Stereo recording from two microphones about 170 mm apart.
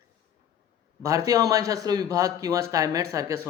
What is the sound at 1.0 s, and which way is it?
Speech, 20° right (ahead or behind).